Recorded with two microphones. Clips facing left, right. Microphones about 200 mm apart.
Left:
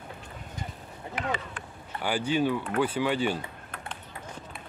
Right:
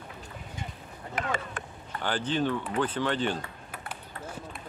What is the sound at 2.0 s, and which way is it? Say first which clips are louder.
Speech: left 2 dB; 10° left (ahead or behind).